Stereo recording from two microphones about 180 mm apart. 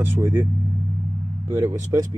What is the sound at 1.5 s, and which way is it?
Speech, 10° right (ahead or behind).